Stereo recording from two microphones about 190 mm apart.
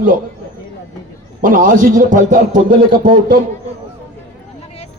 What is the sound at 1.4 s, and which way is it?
A man's voice, 45° right (ahead or behind).